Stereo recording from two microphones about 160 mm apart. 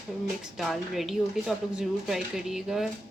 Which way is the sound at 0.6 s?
Centre (ahead or behind).